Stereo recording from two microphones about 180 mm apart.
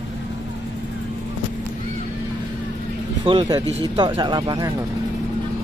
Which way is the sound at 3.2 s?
30° right (ahead or behind).